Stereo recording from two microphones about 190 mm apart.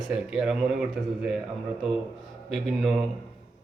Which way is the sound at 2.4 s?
Centre (ahead or behind).